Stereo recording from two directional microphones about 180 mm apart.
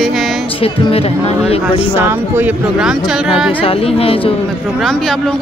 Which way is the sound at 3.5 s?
30° left (ahead or behind).